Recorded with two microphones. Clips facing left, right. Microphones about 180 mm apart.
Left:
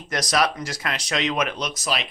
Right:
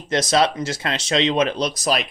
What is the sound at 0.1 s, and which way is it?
Speech, 25° right (ahead or behind).